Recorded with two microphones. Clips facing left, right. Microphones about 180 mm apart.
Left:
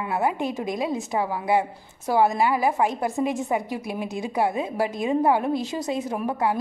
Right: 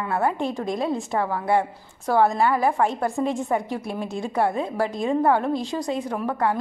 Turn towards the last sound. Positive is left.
turn(degrees=10)  # may be behind; listen again after turning